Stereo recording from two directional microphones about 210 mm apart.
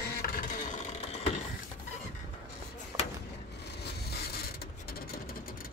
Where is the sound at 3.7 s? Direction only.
50° left (ahead or behind).